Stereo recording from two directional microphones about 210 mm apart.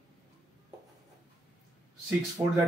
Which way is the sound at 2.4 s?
15° right (ahead or behind).